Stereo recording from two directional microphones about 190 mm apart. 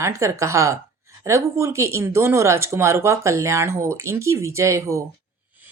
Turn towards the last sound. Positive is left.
turn(degrees=-15)  # may be behind; listen again after turning